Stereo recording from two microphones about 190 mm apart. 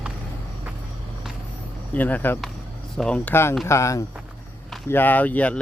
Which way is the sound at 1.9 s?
10° left (ahead or behind).